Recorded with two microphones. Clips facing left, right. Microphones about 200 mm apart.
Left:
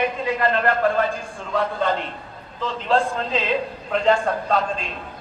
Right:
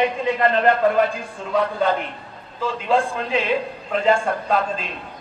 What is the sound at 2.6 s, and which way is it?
A man's voice, 10° right (ahead or behind).